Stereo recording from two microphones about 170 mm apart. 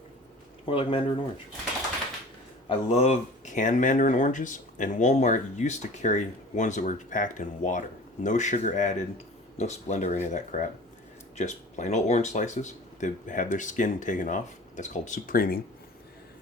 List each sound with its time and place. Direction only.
0.6 s speech: 30° left (ahead or behind)
2.6 s speech: 35° left (ahead or behind); by 15.6 s 60° left (ahead or behind)